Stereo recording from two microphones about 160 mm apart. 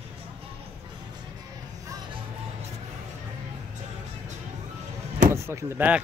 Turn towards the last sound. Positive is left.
turn(degrees=-10)  # may be behind; listen again after turning